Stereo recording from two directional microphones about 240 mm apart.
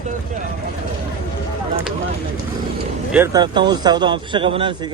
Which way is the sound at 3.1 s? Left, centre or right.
Centre.